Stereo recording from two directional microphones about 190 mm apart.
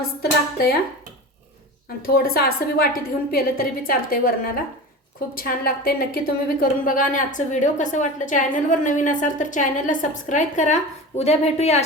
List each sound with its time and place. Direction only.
0.2 s a woman's voice: 50° left (ahead or behind)
2.0 s a woman's voice: 55° left (ahead or behind); by 11.8 s 35° left (ahead or behind)